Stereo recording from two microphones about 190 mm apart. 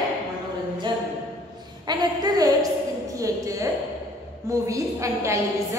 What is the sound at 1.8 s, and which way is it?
A woman's voice, 20° right (ahead or behind).